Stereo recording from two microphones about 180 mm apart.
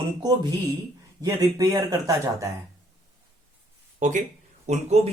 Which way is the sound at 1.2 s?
20° right (ahead or behind).